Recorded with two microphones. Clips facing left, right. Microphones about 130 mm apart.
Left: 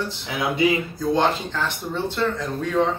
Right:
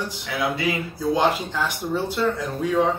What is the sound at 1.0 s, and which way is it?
Speech, 10° right (ahead or behind).